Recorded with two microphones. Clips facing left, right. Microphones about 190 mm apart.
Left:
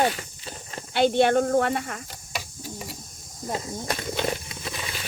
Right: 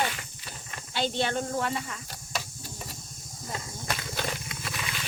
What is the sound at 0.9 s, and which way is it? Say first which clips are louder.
Speech: left 9 dB; 55° left (ahead or behind).